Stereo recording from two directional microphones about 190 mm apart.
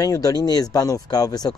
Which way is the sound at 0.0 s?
20° left (ahead or behind).